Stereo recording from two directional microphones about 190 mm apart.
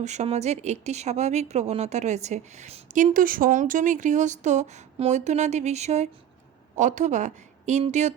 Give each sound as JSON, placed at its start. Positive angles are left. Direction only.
{"t": 0.0, "sound": "a woman's voice", "side_deg": -35}